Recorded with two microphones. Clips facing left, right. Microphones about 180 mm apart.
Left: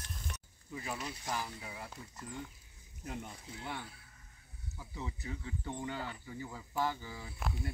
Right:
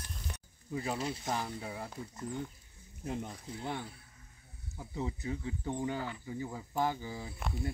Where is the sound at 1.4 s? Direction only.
45° right (ahead or behind).